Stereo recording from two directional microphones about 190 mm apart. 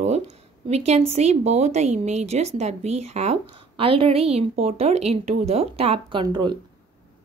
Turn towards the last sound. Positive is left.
turn(degrees=-25)  # may be behind; listen again after turning